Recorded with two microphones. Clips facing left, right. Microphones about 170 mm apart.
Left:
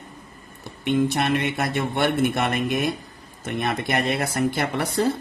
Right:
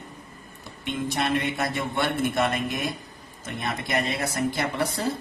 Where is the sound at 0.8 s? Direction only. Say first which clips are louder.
Left 6 dB; 65° left (ahead or behind).